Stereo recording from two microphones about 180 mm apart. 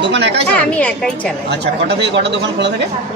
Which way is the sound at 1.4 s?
70° right (ahead or behind).